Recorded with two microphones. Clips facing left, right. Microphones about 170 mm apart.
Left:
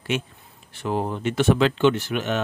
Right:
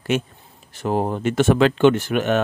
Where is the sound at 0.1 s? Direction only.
45° right (ahead or behind).